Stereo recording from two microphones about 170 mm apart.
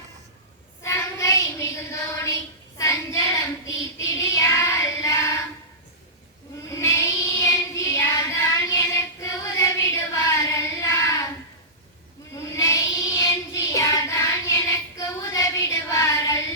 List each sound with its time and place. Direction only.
0.8 s child singing: 15° left (ahead or behind)
6.7 s child singing: 20° left (ahead or behind)
12.5 s child singing: 15° left (ahead or behind)